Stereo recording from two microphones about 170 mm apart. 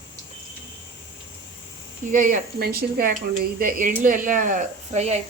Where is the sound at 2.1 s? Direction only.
65° right (ahead or behind); by 5.1 s 45° right (ahead or behind).